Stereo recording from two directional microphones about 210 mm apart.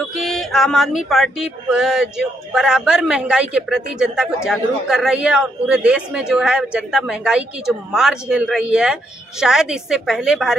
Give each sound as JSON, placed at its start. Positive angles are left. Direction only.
{"t": 0.0, "sound": "speech", "side_deg": 0}